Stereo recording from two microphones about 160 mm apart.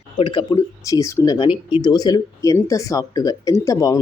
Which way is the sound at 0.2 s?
30° left (ahead or behind).